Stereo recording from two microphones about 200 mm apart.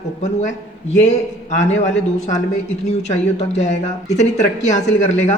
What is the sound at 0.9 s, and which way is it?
Speech, 35° left (ahead or behind).